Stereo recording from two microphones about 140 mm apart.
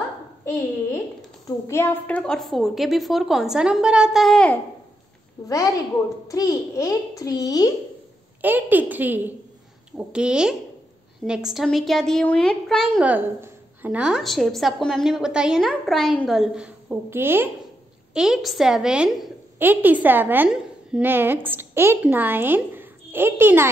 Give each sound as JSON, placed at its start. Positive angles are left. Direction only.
{"t": 1.7, "sound": "a woman's voice", "side_deg": 15}
{"t": 5.4, "sound": "a child's voice", "side_deg": 30}
{"t": 8.4, "sound": "a woman's voice", "side_deg": -15}
{"t": 13.0, "sound": "a woman's voice", "side_deg": -10}
{"t": 18.1, "sound": "a woman's voice", "side_deg": -5}